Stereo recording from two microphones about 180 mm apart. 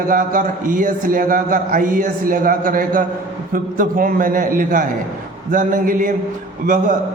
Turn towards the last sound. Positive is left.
turn(degrees=-50)  # may be behind; listen again after turning